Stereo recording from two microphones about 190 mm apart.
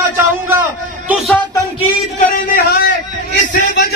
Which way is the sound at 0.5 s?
10° right (ahead or behind).